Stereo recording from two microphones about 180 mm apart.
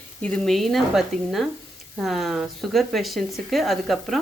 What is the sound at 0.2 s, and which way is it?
Speech, 5° left (ahead or behind).